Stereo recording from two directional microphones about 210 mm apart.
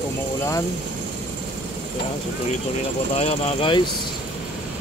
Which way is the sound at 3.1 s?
25° left (ahead or behind).